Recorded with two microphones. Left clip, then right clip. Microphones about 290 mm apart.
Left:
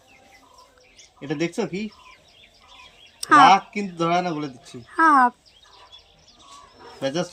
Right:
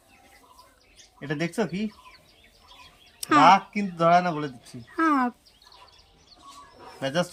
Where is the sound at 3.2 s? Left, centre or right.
Centre.